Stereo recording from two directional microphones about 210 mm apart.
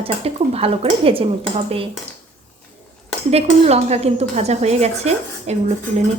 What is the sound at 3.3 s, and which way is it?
A woman's voice, 30° right (ahead or behind).